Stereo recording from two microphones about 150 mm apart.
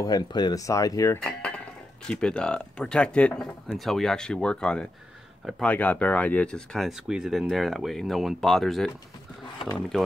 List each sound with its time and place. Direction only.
0.0 s speech: 25° left (ahead or behind)
2.0 s speech: 5° left (ahead or behind)